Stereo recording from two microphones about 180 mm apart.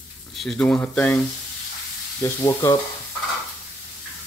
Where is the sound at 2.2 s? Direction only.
20° left (ahead or behind).